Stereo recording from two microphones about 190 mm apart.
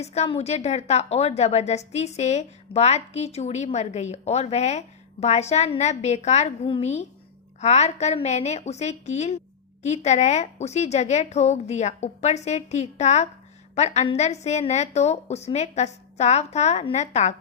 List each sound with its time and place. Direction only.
0.0 s a woman's voice: 35° left (ahead or behind)